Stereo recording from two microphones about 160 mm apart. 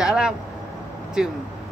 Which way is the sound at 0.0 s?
5° right (ahead or behind).